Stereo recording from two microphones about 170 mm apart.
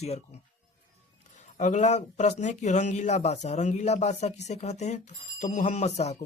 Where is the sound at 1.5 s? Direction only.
45° left (ahead or behind).